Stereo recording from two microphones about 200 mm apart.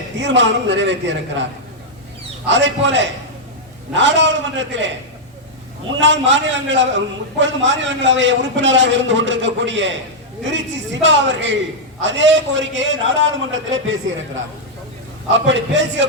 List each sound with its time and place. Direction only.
0.2 s a man's voice: 65° right (ahead or behind)
2.5 s a man's voice: 65° right (ahead or behind)
6.0 s a man's voice: 65° right (ahead or behind)
11.0 s a man's voice: 65° right (ahead or behind)